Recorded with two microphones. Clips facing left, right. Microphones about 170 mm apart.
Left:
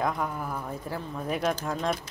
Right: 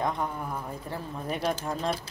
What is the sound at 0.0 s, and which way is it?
Speech, centre (ahead or behind).